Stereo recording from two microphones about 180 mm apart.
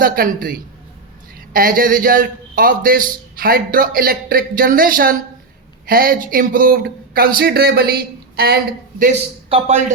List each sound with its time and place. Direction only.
0.0 s a man's voice: 55° right (ahead or behind)
9.5 s a man's voice: 35° right (ahead or behind)